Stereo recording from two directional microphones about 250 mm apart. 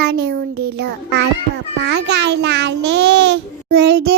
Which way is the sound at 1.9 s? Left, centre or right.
Right.